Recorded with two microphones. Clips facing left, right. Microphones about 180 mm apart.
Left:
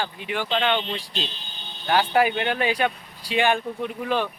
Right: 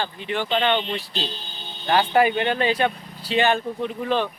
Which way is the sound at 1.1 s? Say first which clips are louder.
Right 1 dB; 35° right (ahead or behind).